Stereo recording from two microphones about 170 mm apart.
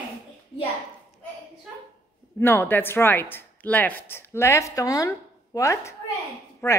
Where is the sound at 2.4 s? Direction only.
15° left (ahead or behind).